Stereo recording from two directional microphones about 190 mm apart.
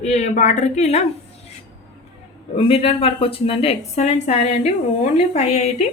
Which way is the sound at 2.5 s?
30° left (ahead or behind).